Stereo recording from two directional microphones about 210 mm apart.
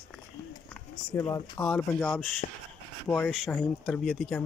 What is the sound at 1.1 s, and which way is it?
Speech, 10° left (ahead or behind).